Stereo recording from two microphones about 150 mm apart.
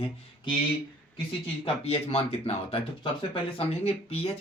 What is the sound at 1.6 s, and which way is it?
Speech, 40° left (ahead or behind).